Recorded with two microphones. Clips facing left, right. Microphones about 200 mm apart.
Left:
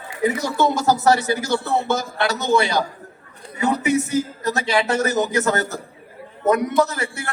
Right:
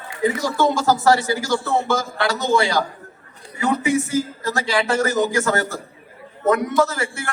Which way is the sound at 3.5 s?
20° left (ahead or behind).